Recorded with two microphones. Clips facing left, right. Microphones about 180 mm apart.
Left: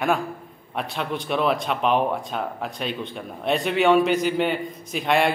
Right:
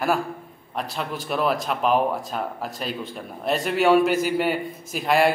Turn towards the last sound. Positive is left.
turn(degrees=-5)  # may be behind; listen again after turning